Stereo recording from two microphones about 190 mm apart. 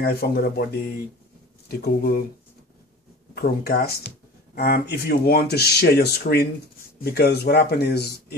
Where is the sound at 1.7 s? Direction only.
55° left (ahead or behind).